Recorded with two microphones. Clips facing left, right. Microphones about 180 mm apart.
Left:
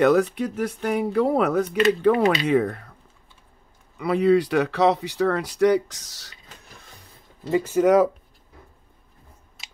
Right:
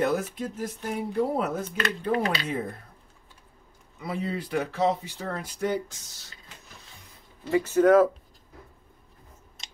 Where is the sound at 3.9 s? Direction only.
75° left (ahead or behind).